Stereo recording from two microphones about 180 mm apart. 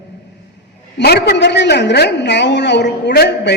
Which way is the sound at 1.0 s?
60° left (ahead or behind).